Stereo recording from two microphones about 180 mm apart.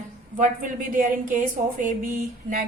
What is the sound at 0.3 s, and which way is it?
A woman's voice, 45° right (ahead or behind).